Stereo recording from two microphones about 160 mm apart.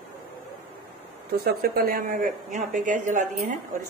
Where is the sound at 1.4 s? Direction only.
70° right (ahead or behind).